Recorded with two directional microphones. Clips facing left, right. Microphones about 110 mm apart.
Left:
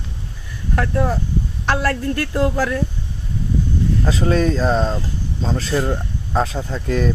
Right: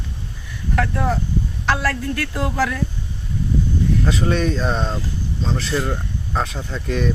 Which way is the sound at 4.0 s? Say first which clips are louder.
Left 5 dB; 30° left (ahead or behind).